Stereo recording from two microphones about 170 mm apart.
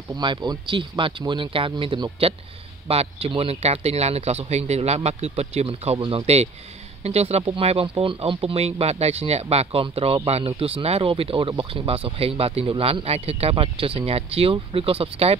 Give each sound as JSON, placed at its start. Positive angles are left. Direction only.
{"t": 0.1, "sound": "speech", "side_deg": -25}